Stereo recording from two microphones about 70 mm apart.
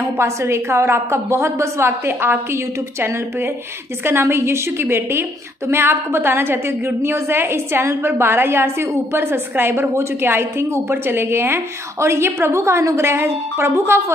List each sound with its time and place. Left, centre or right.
0.2 s a woman's voice: right